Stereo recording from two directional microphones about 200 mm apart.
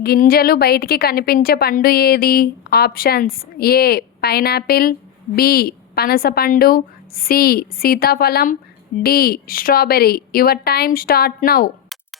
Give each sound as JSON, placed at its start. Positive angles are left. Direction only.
{"t": 0.0, "sound": "a woman's voice", "side_deg": 50}